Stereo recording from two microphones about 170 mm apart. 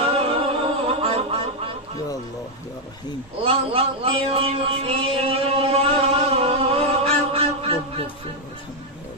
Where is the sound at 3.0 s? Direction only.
25° left (ahead or behind).